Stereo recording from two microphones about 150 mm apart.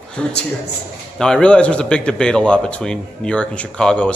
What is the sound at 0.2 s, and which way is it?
A man's voice, 5° left (ahead or behind).